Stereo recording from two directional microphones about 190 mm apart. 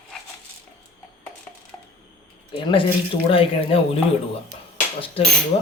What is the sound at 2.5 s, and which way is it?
Speech, 25° left (ahead or behind).